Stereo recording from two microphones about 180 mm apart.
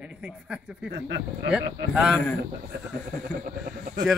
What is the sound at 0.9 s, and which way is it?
Speech, 70° right (ahead or behind).